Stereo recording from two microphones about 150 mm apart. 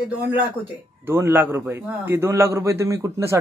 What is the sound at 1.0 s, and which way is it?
A man's voice, 15° right (ahead or behind).